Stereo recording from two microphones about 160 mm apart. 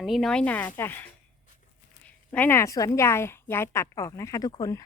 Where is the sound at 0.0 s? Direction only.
Centre (ahead or behind).